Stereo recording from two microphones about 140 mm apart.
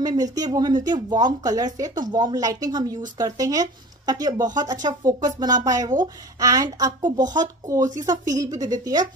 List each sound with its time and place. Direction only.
0.0 s a woman's voice: 30° right (ahead or behind)